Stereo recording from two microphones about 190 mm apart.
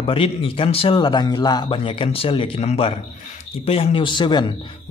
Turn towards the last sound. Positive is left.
turn(degrees=25)  # may be behind; listen again after turning